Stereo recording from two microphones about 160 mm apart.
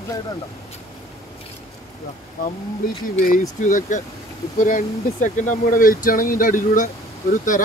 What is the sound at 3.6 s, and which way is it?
Speech, 50° left (ahead or behind).